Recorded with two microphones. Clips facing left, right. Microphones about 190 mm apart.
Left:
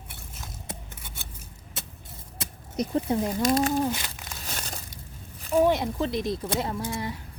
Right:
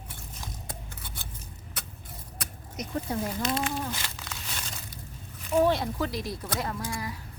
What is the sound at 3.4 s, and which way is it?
Speech, 40° left (ahead or behind).